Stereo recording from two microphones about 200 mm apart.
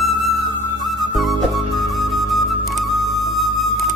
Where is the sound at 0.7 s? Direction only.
Centre (ahead or behind).